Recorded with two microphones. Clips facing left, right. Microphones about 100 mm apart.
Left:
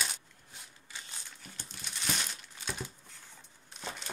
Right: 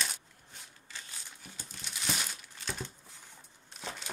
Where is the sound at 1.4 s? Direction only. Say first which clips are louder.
Even; 5° right (ahead or behind).